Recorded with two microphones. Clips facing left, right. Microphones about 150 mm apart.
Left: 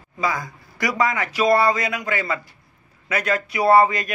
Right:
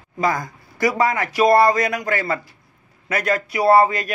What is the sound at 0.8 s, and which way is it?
A man's voice, 30° right (ahead or behind).